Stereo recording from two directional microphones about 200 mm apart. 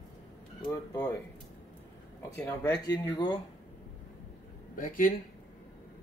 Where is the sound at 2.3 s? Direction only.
15° left (ahead or behind).